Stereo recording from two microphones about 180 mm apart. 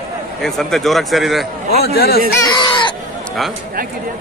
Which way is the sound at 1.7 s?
60° left (ahead or behind).